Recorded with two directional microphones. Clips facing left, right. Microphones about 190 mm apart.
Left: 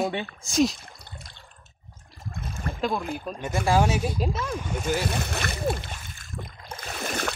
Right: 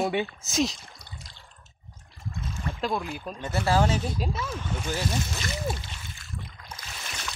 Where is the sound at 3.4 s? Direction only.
10° left (ahead or behind).